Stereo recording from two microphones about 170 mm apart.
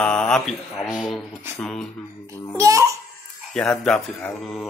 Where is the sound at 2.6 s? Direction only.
20° right (ahead or behind).